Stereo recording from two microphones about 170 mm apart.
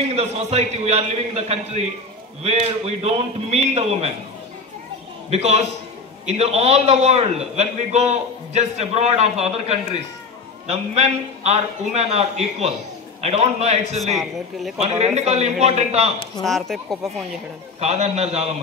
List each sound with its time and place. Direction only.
0.1 s a man's voice: 40° right (ahead or behind)
5.3 s a man's voice: 40° right (ahead or behind)
15.1 s a man's voice: 40° right (ahead or behind)
16.4 s speech: centre (ahead or behind)
17.7 s a man's voice: 40° right (ahead or behind)